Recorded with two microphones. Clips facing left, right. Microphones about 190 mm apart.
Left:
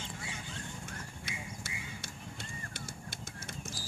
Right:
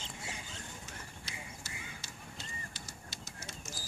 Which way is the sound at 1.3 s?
55° left (ahead or behind).